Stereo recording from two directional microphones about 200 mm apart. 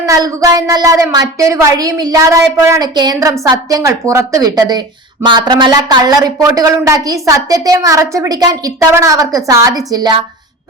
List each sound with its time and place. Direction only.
0.0 s a woman's voice: 15° right (ahead or behind)